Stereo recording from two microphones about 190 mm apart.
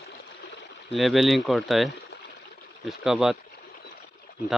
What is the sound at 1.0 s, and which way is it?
Speech, centre (ahead or behind).